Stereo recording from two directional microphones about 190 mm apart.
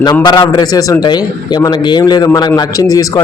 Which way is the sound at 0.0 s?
20° left (ahead or behind).